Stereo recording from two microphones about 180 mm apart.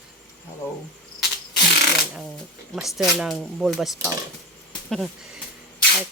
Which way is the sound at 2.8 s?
Centre (ahead or behind).